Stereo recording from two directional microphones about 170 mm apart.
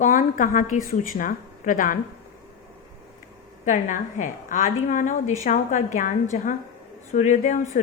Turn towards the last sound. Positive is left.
turn(degrees=45)  # may be behind; listen again after turning